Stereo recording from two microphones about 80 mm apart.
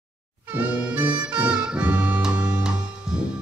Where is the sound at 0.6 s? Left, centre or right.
Centre.